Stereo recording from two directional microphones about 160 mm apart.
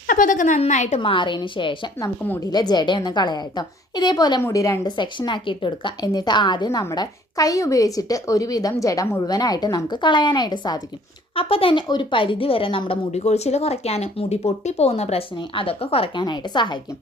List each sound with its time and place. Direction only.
0.1 s a woman's voice: 55° left (ahead or behind); by 16.8 s 30° left (ahead or behind)